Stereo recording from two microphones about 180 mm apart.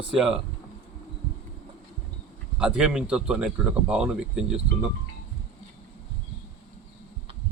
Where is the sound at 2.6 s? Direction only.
5° right (ahead or behind).